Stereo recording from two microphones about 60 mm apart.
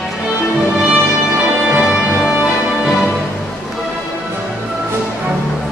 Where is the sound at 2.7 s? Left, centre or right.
Centre.